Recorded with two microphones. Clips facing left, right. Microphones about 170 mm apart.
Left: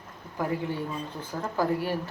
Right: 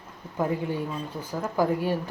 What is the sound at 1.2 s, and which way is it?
Speech, 10° right (ahead or behind).